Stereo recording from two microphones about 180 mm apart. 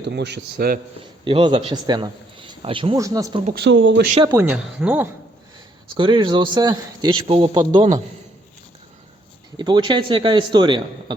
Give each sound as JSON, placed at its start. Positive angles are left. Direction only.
{"t": 0.1, "sound": "speech", "side_deg": -70}
{"t": 1.2, "sound": "a man's voice", "side_deg": -25}
{"t": 2.9, "sound": "a man's voice", "side_deg": -20}
{"t": 3.5, "sound": "speech", "side_deg": -75}
{"t": 4.2, "sound": "speech", "side_deg": -15}
{"t": 5.9, "sound": "a man's voice", "side_deg": -25}
{"t": 9.6, "sound": "a man's voice", "side_deg": -25}